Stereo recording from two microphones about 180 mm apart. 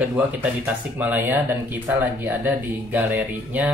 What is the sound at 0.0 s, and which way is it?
Speech, 10° right (ahead or behind).